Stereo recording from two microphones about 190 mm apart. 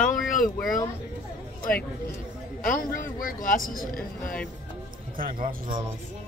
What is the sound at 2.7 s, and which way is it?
Speech, 45° left (ahead or behind).